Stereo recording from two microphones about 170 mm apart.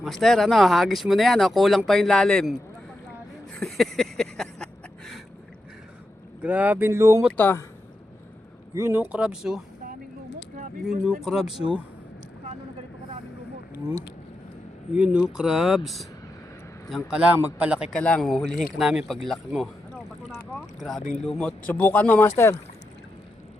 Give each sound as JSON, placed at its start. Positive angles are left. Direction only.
{"t": 0.0, "sound": "speech", "side_deg": 0}
{"t": 3.5, "sound": "a sound", "side_deg": 0}
{"t": 6.4, "sound": "speech", "side_deg": -10}
{"t": 7.3, "sound": "speech", "side_deg": 10}
{"t": 8.7, "sound": "speech", "side_deg": -15}
{"t": 11.0, "sound": "speech", "side_deg": 0}
{"t": 14.9, "sound": "speech", "side_deg": -5}
{"t": 17.1, "sound": "speech", "side_deg": -5}
{"t": 17.9, "sound": "speech", "side_deg": 5}
{"t": 20.3, "sound": "boat", "side_deg": 0}
{"t": 21.0, "sound": "speech", "side_deg": 45}
{"t": 21.2, "sound": "speech", "side_deg": 5}